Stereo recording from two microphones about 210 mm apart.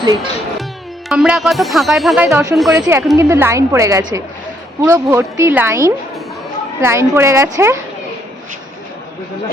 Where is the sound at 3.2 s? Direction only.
10° right (ahead or behind).